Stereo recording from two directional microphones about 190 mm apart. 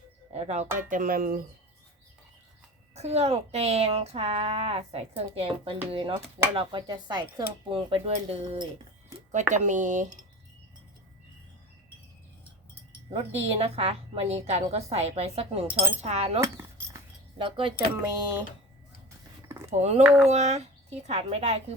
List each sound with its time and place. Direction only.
0.3 s a woman's voice: 35° right (ahead or behind)
2.9 s a woman's voice: 35° right (ahead or behind)
13.1 s a woman's voice: 30° right (ahead or behind)
16.4 s a sound: 15° right (ahead or behind)
17.3 s speech: 25° right (ahead or behind)
19.7 s a woman's voice: 35° right (ahead or behind)
20.0 s speech: 5° right (ahead or behind)
20.2 s a woman's voice: 35° right (ahead or behind)